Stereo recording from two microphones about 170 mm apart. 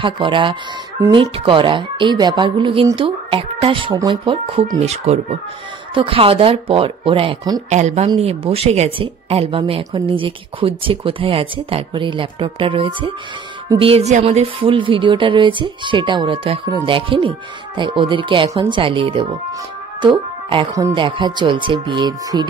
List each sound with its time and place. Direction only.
0.0 s speech: 30° right (ahead or behind)
7.7 s speech: 45° right (ahead or behind); by 22.5 s 25° right (ahead or behind)